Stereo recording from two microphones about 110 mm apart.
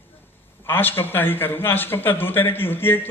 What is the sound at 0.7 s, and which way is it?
A man's voice, 20° left (ahead or behind).